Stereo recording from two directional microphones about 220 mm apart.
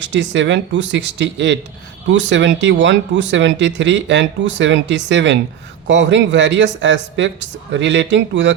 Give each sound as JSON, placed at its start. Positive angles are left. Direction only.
{"t": 0.0, "sound": "speech", "side_deg": -55}